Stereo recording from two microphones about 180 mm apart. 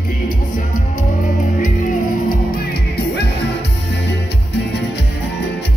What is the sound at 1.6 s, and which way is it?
Music, 50° left (ahead or behind).